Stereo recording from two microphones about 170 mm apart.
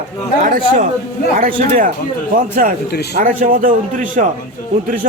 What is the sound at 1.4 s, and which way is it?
A man's voice, 55° right (ahead or behind).